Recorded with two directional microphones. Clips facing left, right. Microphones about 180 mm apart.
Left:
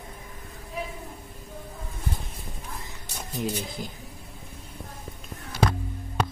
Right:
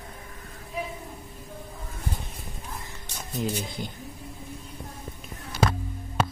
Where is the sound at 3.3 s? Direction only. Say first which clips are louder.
Right 1 dB; centre (ahead or behind).